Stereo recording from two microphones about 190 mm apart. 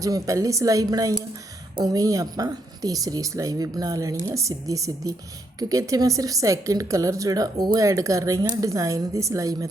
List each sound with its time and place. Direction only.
0.0 s a woman's voice: 15° right (ahead or behind)